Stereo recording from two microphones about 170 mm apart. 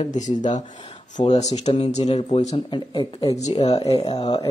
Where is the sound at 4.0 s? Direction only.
25° left (ahead or behind).